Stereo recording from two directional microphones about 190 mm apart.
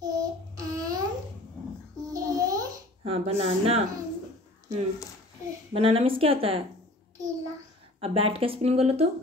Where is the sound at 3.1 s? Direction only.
30° right (ahead or behind).